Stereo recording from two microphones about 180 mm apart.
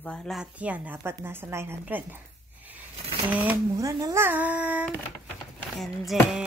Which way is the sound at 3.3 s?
10° right (ahead or behind).